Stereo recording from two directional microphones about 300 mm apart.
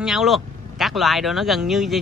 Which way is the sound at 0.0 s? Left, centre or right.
Centre.